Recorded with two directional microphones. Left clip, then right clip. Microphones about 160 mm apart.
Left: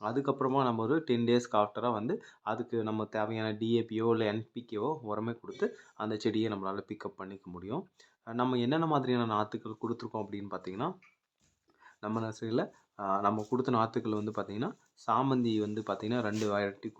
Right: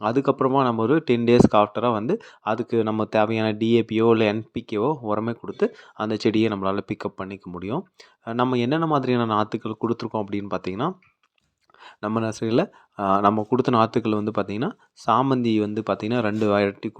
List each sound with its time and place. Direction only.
0.0 s speech: 45° right (ahead or behind)